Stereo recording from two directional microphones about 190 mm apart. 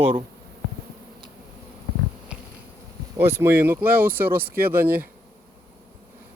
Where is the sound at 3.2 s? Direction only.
10° right (ahead or behind).